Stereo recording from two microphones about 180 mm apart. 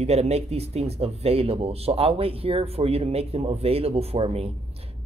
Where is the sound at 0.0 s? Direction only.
35° right (ahead or behind).